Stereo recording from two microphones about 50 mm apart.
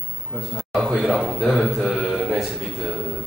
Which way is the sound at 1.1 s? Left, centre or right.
Centre.